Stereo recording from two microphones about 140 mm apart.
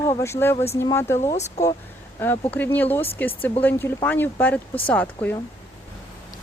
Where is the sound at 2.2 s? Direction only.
10° left (ahead or behind).